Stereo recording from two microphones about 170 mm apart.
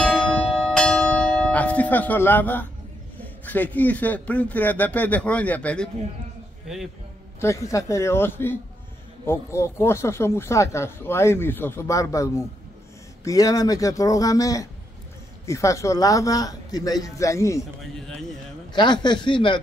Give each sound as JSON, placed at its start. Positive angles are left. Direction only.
{"t": 0.0, "sound": "church bell", "side_deg": 5}
{"t": 3.2, "sound": "speech", "side_deg": 10}
{"t": 6.7, "sound": "a man's voice", "side_deg": -5}
{"t": 7.3, "sound": "speech", "side_deg": 15}
{"t": 18.7, "sound": "speech", "side_deg": 25}